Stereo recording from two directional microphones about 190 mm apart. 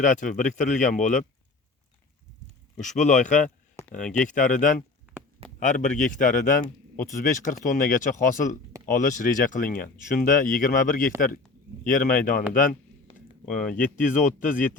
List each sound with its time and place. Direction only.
0.0 s speech: 45° left (ahead or behind)
3.0 s speech: 40° left (ahead or behind)
3.8 s a sound: 5° left (ahead or behind)
4.2 s speech: 45° left (ahead or behind)
13.7 s speech: 10° left (ahead or behind)
13.9 s speech: 45° left (ahead or behind)